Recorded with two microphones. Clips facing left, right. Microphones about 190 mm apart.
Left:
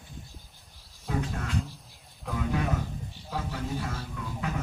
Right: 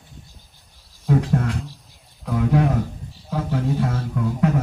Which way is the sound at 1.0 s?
65° right (ahead or behind).